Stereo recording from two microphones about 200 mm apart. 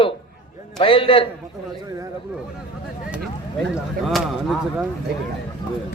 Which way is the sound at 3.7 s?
Centre (ahead or behind).